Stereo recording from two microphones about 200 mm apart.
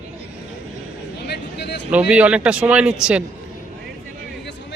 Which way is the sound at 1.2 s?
55° left (ahead or behind).